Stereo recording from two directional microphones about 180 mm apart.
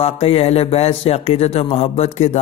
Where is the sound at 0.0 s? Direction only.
35° left (ahead or behind).